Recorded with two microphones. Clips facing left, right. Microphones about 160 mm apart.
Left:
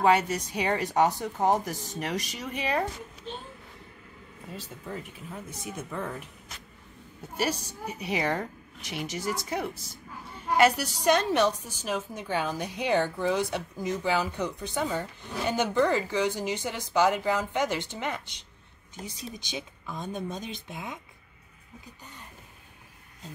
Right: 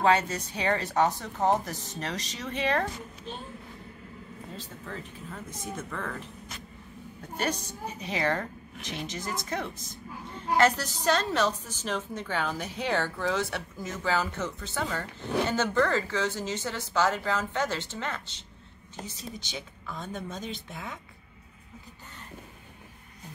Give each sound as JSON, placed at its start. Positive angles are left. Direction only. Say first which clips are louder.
{"t": 0.0, "sound": "a woman's voice", "louder": "left 1 dB", "side_deg": 10}
{"t": 4.6, "sound": "a woman's voice", "louder": "left 4 dB", "side_deg": 10}
{"t": 7.3, "sound": "a woman's voice", "louder": "left 1 dB", "side_deg": 10}